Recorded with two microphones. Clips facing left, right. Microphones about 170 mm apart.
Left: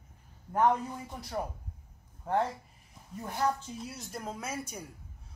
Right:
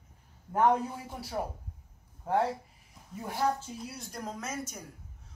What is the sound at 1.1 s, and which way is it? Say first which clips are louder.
A woman's voice: right 1 dB; 5° right (ahead or behind).